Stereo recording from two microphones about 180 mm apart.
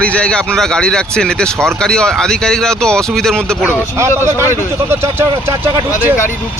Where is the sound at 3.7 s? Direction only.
15° right (ahead or behind).